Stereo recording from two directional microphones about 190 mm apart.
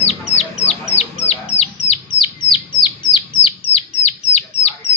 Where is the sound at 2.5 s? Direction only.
25° left (ahead or behind).